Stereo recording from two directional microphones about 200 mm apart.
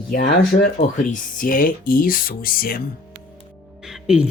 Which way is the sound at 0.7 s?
40° left (ahead or behind).